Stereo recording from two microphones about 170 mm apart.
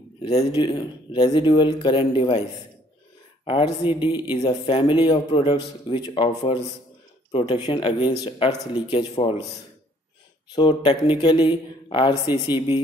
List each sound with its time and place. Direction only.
0.2 s speech: 35° left (ahead or behind)
3.4 s speech: 30° left (ahead or behind)
10.5 s speech: 30° left (ahead or behind)